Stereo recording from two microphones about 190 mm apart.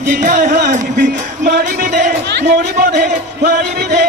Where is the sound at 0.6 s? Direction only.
40° right (ahead or behind).